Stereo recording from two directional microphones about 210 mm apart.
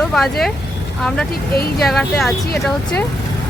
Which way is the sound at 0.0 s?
Centre (ahead or behind).